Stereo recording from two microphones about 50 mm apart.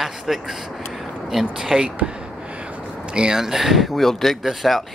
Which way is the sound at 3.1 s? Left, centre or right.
Centre.